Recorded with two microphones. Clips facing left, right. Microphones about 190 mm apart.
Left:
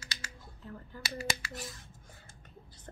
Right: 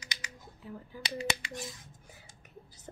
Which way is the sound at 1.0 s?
20° right (ahead or behind).